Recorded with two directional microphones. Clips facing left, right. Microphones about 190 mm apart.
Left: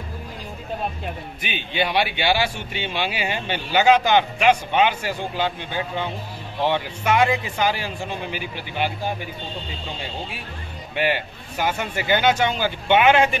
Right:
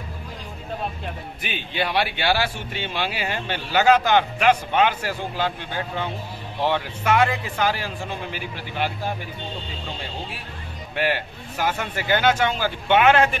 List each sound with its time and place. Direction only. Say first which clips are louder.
1.4 s a man's voice: left 1 dB; 35° right (ahead or behind)
1.8 s speech: left 2 dB; centre (ahead or behind)
11.0 s speech: left 1 dB; centre (ahead or behind)